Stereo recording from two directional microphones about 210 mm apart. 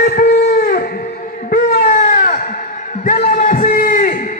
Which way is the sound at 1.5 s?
40° left (ahead or behind).